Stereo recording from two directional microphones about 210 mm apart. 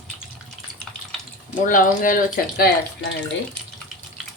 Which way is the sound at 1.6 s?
40° left (ahead or behind).